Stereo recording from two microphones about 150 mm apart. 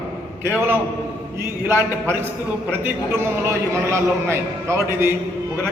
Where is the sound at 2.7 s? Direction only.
15° right (ahead or behind).